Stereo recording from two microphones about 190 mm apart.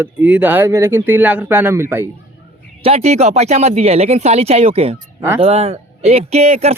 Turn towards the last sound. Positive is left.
turn(degrees=-35)  # may be behind; listen again after turning